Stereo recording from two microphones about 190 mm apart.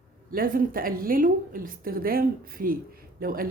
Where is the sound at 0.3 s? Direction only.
50° right (ahead or behind).